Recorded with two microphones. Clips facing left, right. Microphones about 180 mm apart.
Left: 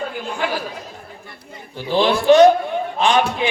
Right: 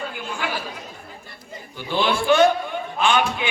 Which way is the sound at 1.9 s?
35° left (ahead or behind).